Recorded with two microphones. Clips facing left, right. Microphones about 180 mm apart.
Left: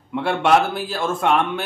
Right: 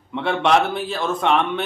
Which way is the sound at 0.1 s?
5° left (ahead or behind).